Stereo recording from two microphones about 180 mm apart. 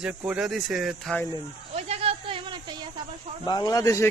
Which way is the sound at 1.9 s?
30° right (ahead or behind).